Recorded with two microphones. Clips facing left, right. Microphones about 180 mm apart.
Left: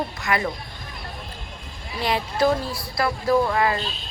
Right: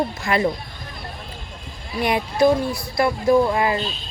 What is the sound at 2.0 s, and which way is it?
Speech, 15° right (ahead or behind).